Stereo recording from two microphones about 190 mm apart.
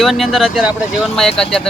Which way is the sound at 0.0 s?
Centre (ahead or behind).